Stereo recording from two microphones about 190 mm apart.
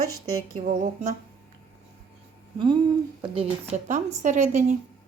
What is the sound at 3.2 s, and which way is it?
A woman's voice, 30° right (ahead or behind).